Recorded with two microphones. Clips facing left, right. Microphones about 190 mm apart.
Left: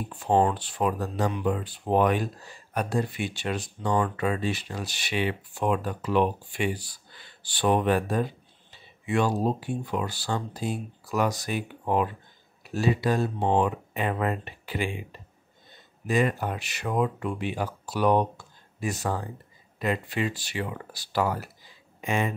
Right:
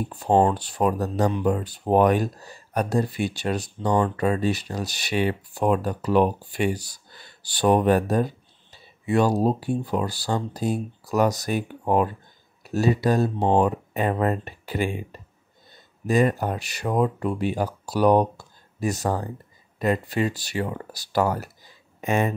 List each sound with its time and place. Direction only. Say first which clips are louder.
0.1 s speech: right 3 dB; 40° right (ahead or behind)